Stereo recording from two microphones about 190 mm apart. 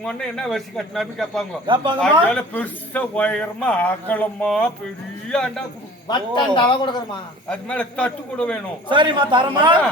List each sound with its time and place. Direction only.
0.0 s a man's voice: 5° left (ahead or behind)
1.6 s a man's voice: 25° right (ahead or behind)
2.3 s a man's voice: 10° left (ahead or behind)
6.1 s a man's voice: 25° left (ahead or behind)
7.5 s a man's voice: 5° left (ahead or behind)
8.9 s a man's voice: 25° right (ahead or behind)